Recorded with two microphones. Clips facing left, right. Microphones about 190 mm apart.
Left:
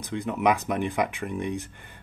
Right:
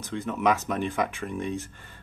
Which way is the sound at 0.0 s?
15° left (ahead or behind).